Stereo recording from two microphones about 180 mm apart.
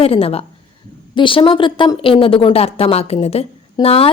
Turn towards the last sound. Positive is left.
turn(degrees=30)  # may be behind; listen again after turning